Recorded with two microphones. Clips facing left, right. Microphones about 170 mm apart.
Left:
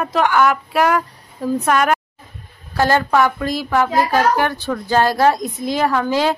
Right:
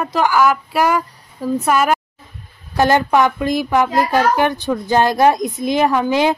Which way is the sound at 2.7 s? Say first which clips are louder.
Right 2 dB; 20° right (ahead or behind).